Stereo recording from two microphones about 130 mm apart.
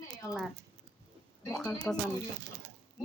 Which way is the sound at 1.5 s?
10° left (ahead or behind).